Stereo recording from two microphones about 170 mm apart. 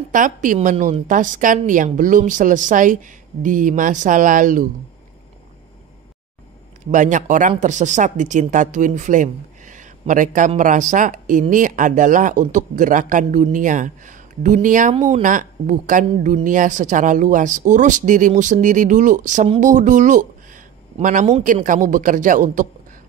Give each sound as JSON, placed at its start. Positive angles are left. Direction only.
{"t": 0.1, "sound": "speech", "side_deg": -50}
{"t": 6.9, "sound": "speech", "side_deg": -50}